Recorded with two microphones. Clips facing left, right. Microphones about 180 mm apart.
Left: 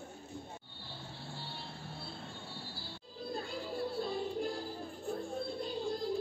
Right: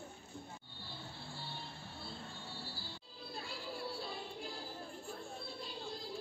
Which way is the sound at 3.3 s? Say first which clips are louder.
Left 6 dB; 45° left (ahead or behind).